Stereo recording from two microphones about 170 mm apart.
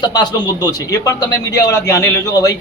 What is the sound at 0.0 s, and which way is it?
A man's voice, 25° left (ahead or behind).